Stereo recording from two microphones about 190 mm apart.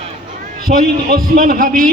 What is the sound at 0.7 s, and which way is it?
A man's voice, 45° right (ahead or behind).